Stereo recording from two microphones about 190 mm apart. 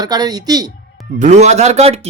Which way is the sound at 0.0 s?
20° right (ahead or behind).